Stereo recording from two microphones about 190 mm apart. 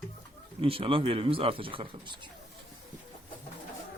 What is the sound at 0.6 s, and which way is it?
Speech, 30° right (ahead or behind).